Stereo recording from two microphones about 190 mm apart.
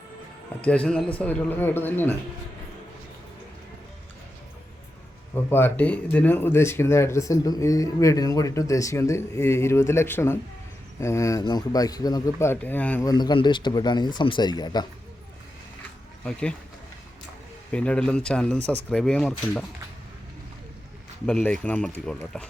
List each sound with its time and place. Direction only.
0.6 s speech: 5° left (ahead or behind)
5.3 s speech: 10° left (ahead or behind)
13.1 s speech: 20° left (ahead or behind)
16.2 s speech: 5° left (ahead or behind)
17.7 s speech: 5° left (ahead or behind)
21.2 s speech: 5° left (ahead or behind)